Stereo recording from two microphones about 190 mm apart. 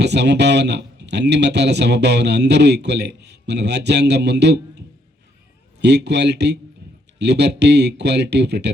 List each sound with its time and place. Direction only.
0.0 s a man's voice: 65° right (ahead or behind)
5.8 s a man's voice: 65° right (ahead or behind)